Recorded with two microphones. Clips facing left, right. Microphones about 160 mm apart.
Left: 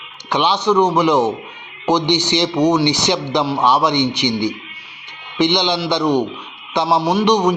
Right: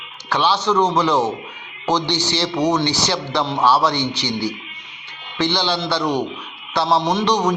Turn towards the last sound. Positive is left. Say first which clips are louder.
# left 3 dB
turn(degrees=15)  # may be behind; listen again after turning